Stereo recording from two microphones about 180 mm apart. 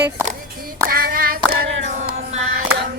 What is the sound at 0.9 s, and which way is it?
Clapping, 55° right (ahead or behind).